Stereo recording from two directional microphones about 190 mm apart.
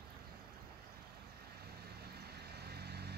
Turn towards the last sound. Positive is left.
turn(degrees=-60)  # may be behind; listen again after turning